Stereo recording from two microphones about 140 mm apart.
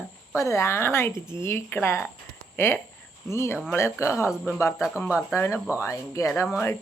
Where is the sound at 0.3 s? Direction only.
20° left (ahead or behind).